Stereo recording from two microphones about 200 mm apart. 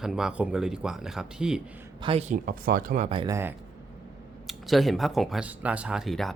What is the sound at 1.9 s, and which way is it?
Speech, 25° right (ahead or behind).